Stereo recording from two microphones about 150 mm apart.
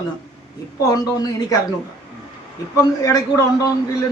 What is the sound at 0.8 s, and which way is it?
Speech, 25° left (ahead or behind).